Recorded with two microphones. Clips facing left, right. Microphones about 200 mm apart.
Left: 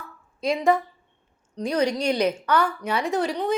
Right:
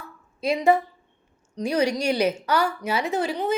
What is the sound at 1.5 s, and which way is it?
A woman's voice, 10° right (ahead or behind).